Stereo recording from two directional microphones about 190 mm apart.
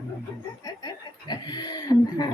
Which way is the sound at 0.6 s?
20° left (ahead or behind).